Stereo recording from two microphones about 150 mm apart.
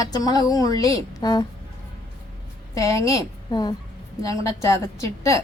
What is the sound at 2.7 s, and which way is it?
A woman's voice, 20° left (ahead or behind).